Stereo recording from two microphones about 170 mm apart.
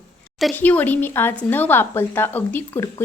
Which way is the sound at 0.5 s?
10° left (ahead or behind).